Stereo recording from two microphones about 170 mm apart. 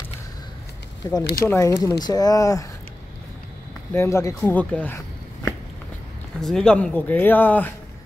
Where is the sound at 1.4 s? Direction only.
15° left (ahead or behind).